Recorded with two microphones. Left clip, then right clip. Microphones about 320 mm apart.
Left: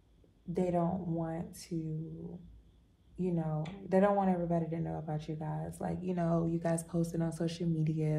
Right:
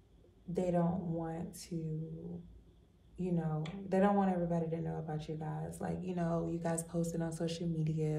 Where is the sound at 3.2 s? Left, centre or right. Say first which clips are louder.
Left 2 dB; centre.